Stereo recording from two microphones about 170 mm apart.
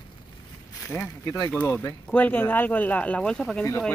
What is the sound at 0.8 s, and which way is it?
Speech, 15° left (ahead or behind).